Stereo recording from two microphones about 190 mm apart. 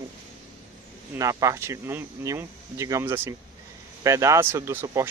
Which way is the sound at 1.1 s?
15° right (ahead or behind).